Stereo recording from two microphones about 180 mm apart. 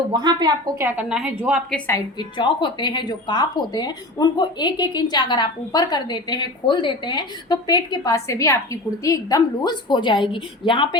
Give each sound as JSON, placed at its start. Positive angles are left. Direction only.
{"t": 0.1, "sound": "speech", "side_deg": -20}
{"t": 0.9, "sound": "a woman's voice", "side_deg": -5}
{"t": 1.7, "sound": "a woman's voice", "side_deg": 15}